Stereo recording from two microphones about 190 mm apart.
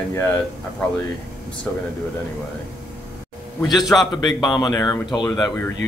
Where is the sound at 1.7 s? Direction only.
10° left (ahead or behind).